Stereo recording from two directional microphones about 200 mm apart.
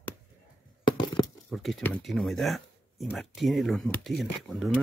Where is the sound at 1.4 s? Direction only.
Centre (ahead or behind).